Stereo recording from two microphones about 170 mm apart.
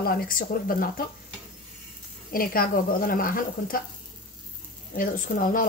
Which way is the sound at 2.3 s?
60° left (ahead or behind).